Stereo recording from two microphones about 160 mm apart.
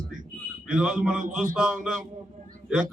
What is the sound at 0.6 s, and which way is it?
Speech, 5° right (ahead or behind).